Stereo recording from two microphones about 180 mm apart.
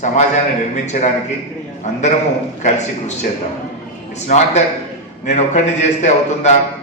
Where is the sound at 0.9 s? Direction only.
40° left (ahead or behind).